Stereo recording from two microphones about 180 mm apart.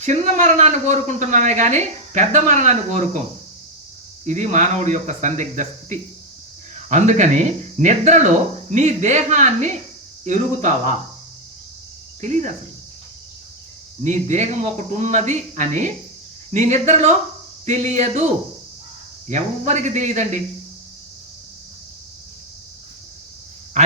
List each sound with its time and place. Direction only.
0.0 s a woman's voice: 40° right (ahead or behind)
4.3 s a woman's voice: 40° right (ahead or behind)
12.2 s a woman's voice: 40° right (ahead or behind)
14.0 s a woman's voice: 40° right (ahead or behind)
19.3 s a woman's voice: 40° right (ahead or behind)